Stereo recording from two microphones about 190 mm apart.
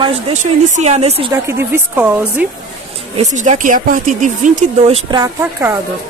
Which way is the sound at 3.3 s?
40° right (ahead or behind).